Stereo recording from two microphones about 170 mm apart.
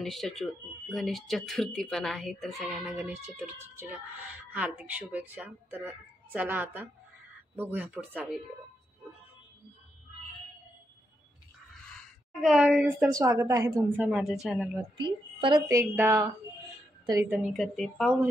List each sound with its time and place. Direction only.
0.0 s speech: centre (ahead or behind)
12.4 s speech: centre (ahead or behind)
13.1 s speech: 20° right (ahead or behind)
15.0 s a woman's voice: 25° right (ahead or behind)
15.8 s a woman's voice: 15° right (ahead or behind)
17.3 s speech: 5° right (ahead or behind)